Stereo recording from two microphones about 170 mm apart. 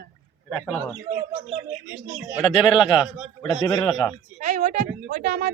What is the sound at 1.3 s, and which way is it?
Speech, 35° right (ahead or behind).